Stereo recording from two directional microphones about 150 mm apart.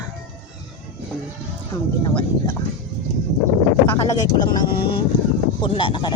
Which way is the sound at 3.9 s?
20° left (ahead or behind).